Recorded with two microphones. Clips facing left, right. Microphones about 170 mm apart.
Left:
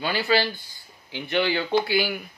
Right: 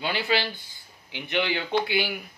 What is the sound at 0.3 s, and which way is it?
Speech, 20° right (ahead or behind).